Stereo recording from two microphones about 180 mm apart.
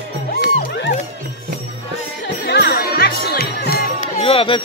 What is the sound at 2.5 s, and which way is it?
Jingle bell, 65° left (ahead or behind).